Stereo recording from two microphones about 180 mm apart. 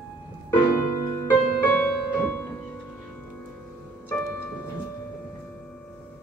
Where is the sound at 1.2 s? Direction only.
10° left (ahead or behind).